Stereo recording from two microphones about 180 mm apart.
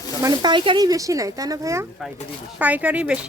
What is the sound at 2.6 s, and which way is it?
Speech, 10° right (ahead or behind).